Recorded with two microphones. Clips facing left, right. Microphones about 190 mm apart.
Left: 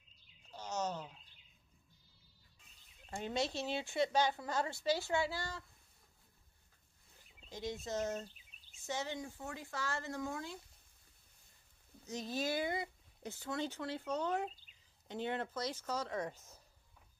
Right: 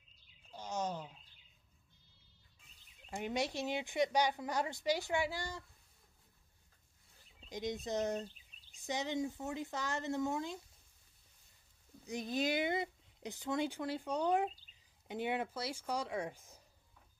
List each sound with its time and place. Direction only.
0.5 s wild animals: 15° right (ahead or behind)
3.1 s a woman's voice: 15° right (ahead or behind)
7.4 s a woman's voice: 15° right (ahead or behind)
12.1 s a woman's voice: 15° right (ahead or behind)